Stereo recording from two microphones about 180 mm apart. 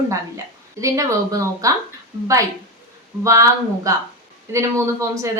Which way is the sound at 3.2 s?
15° right (ahead or behind).